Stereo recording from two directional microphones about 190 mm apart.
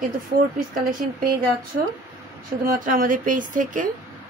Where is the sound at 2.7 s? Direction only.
45° right (ahead or behind).